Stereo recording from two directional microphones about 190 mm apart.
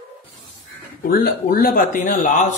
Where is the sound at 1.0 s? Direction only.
50° left (ahead or behind).